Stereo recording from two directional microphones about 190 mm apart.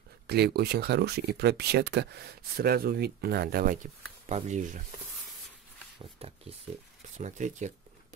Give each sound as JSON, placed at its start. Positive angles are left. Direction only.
{"t": 0.3, "sound": "speech", "side_deg": -55}
{"t": 6.2, "sound": "speech", "side_deg": -30}